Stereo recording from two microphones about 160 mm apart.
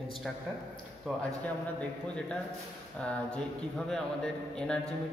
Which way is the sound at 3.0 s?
5° left (ahead or behind).